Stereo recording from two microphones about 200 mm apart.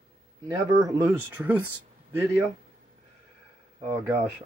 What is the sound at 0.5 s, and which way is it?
Speech, 15° right (ahead or behind).